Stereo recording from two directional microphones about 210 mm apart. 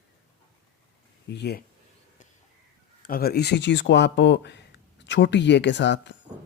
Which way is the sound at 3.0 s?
45° left (ahead or behind).